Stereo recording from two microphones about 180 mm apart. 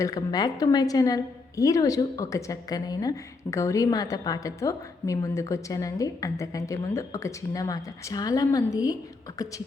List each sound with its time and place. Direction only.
0.0 s a woman's voice: 20° left (ahead or behind)